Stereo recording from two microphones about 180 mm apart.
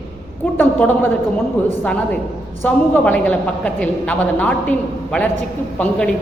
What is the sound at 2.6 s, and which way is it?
A woman's voice, 10° left (ahead or behind).